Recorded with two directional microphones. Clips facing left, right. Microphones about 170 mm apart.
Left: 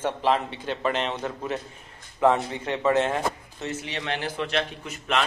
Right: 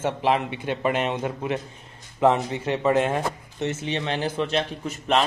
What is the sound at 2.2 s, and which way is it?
Speech, 20° right (ahead or behind).